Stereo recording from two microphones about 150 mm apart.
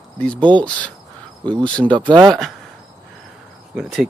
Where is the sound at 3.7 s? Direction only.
Centre (ahead or behind).